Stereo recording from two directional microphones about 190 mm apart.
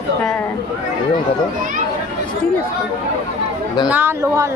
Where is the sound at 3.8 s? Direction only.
10° right (ahead or behind).